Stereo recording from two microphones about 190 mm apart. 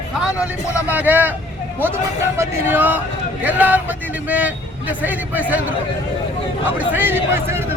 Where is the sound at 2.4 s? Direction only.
10° right (ahead or behind).